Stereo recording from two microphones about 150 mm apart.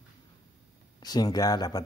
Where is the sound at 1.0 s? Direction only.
25° left (ahead or behind).